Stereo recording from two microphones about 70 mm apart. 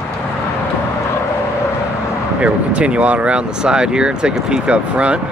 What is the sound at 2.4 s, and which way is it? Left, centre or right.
Speech, centre.